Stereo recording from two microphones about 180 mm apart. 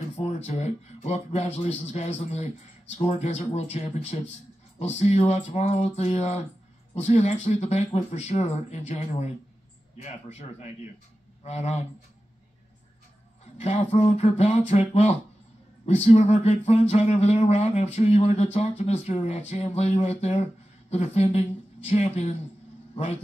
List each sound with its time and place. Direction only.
0.2 s speech: 35° left (ahead or behind)
13.6 s speech: 35° left (ahead or behind)